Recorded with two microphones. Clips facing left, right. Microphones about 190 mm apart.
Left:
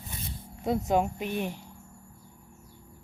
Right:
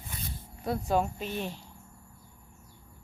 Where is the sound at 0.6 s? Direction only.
20° left (ahead or behind).